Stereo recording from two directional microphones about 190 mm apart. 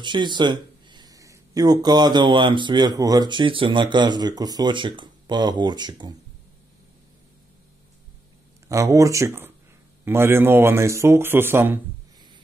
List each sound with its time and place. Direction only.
0.0 s speech: 25° right (ahead or behind)
8.6 s speech: 15° right (ahead or behind)